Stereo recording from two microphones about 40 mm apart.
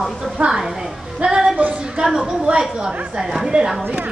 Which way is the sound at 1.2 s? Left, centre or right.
Centre.